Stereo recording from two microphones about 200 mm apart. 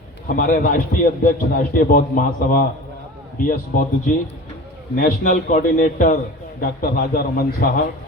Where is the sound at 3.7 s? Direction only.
45° left (ahead or behind).